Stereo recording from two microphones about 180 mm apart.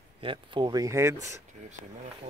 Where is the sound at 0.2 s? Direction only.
30° right (ahead or behind).